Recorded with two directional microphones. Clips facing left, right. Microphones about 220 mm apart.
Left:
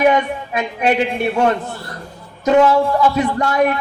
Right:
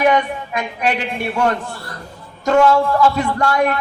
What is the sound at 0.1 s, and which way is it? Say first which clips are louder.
Speech: even; 25° left (ahead or behind).